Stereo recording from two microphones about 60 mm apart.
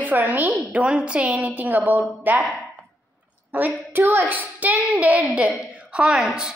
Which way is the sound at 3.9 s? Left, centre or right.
Right.